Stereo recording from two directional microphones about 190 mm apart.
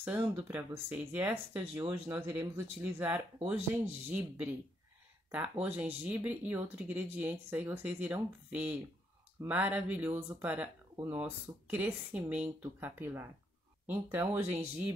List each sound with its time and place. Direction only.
0.0 s speech: 5° right (ahead or behind)
1.8 s speech: 25° right (ahead or behind)
2.1 s speech: 10° right (ahead or behind)